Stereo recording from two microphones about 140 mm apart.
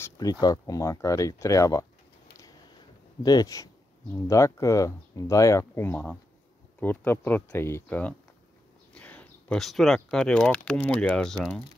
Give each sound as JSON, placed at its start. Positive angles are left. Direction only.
{"t": 0.0, "sound": "speech", "side_deg": 25}
{"t": 3.3, "sound": "speech", "side_deg": 25}